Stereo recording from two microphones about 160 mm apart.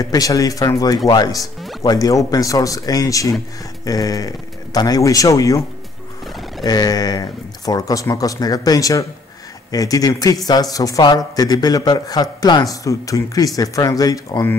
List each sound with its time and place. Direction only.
0.0 s speech: 20° left (ahead or behind)